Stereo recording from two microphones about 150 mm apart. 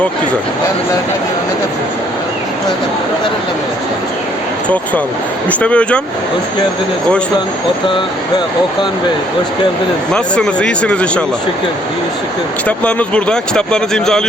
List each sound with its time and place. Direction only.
5.5 s speech: 10° left (ahead or behind)
10.1 s speech: 5° left (ahead or behind)
12.6 s speech: 10° left (ahead or behind)